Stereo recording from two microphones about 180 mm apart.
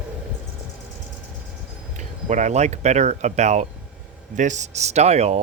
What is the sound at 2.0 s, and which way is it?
Speech, 40° right (ahead or behind).